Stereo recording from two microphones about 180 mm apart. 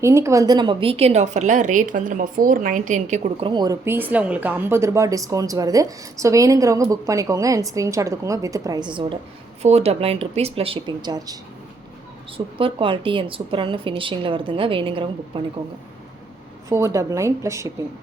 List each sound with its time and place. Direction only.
0.0 s a woman's voice: 15° right (ahead or behind); by 3.3 s 40° right (ahead or behind)
3.4 s a woman's voice: 25° right (ahead or behind)
12.5 s a woman's voice: 30° right (ahead or behind)
16.6 s speech: 15° right (ahead or behind)